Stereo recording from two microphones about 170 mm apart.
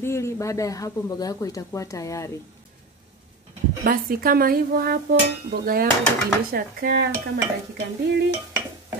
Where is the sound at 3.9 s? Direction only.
60° right (ahead or behind).